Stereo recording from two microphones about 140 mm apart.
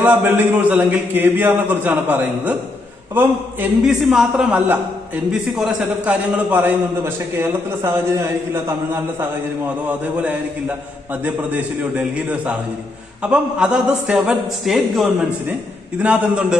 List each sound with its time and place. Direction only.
0.0 s a man's voice: 10° right (ahead or behind)
3.8 s a man's voice: 5° right (ahead or behind); by 8.7 s 20° right (ahead or behind)
9.8 s a man's voice: 10° right (ahead or behind)